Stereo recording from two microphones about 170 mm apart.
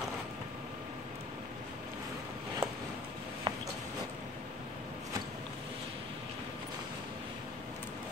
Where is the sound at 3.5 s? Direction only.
30° right (ahead or behind).